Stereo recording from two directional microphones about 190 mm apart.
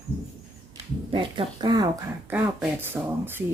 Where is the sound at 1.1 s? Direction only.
25° right (ahead or behind).